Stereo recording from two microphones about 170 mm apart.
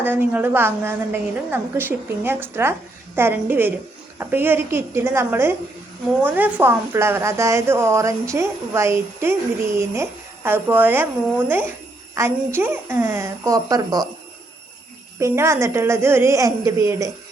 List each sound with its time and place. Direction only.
0.0 s a woman's voice: 10° right (ahead or behind)
15.2 s a woman's voice: 15° right (ahead or behind)